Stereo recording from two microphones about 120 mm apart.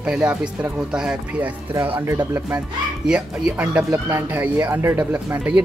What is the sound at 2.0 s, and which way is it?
Speech, 30° right (ahead or behind).